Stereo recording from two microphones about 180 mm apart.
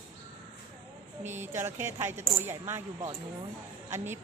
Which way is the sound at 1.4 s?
15° right (ahead or behind).